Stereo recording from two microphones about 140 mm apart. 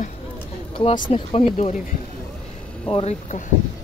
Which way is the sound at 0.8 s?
40° left (ahead or behind).